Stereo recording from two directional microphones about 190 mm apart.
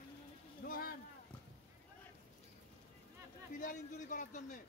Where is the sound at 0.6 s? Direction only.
50° left (ahead or behind).